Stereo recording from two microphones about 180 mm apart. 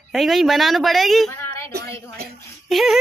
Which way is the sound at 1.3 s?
15° left (ahead or behind).